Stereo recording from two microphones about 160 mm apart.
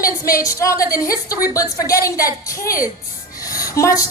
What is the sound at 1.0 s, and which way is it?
A woman's voice, 20° left (ahead or behind).